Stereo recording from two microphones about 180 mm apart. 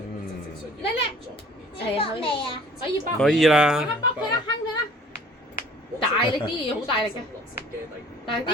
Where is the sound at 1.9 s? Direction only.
30° left (ahead or behind).